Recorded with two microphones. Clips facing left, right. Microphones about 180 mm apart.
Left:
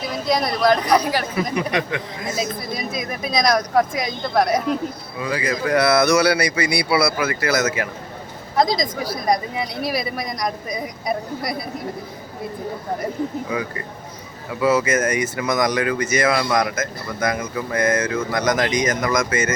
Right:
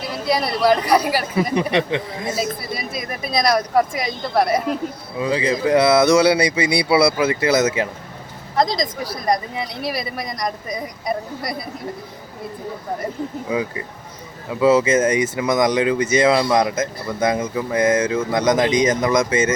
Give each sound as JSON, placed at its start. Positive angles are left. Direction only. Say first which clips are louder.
{"t": 0.1, "sound": "speech", "louder": "right 1 dB", "side_deg": -5}
{"t": 1.5, "sound": "speech", "louder": "right 4 dB", "side_deg": -25}
{"t": 2.3, "sound": "a woman's voice", "louder": "even", "side_deg": -5}
{"t": 5.2, "sound": "speech", "louder": "right 4 dB", "side_deg": -25}
{"t": 8.5, "sound": "a woman's voice", "louder": "left 1 dB", "side_deg": 0}
{"t": 14.6, "sound": "speech", "louder": "right 4 dB", "side_deg": -25}